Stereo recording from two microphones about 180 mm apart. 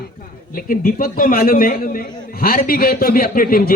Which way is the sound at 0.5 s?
50° left (ahead or behind).